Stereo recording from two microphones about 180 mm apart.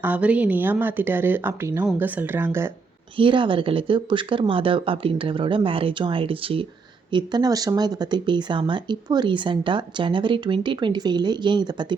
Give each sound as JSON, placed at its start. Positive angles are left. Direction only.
{"t": 0.0, "sound": "speech", "side_deg": -10}
{"t": 3.2, "sound": "speech", "side_deg": -30}